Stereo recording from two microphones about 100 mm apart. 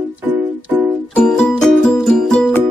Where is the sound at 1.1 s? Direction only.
10° left (ahead or behind).